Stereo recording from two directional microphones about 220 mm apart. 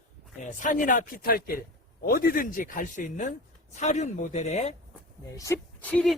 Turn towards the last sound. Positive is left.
turn(degrees=5)  # may be behind; listen again after turning